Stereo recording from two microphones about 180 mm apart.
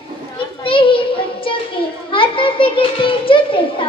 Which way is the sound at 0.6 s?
30° left (ahead or behind).